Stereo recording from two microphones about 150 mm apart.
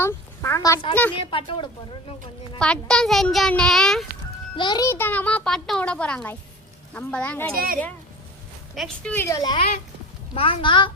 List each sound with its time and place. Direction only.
0.0 s a sound: 15° left (ahead or behind)
1.2 s a child's voice: 35° left (ahead or behind)
2.6 s a child's voice: 5° left (ahead or behind)
4.5 s a child's voice: 30° left (ahead or behind); by 7.4 s 10° left (ahead or behind)
7.5 s speech: 75° right (ahead or behind)
8.7 s speech: centre (ahead or behind)
9.1 s a woman's voice: 20° left (ahead or behind)
10.3 s a child's voice: 35° left (ahead or behind)